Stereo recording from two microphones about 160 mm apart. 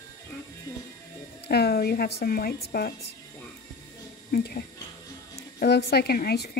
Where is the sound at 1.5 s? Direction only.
80° left.